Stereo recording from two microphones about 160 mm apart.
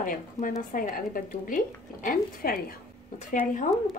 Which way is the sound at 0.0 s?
55° left (ahead or behind).